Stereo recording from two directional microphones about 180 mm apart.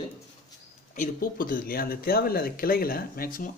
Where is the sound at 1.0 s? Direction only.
50° left (ahead or behind).